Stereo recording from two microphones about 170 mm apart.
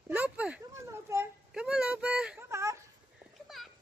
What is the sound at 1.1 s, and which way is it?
Speech, 15° right (ahead or behind).